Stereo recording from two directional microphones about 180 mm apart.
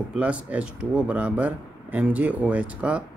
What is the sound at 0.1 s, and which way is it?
Speech, 5° right (ahead or behind).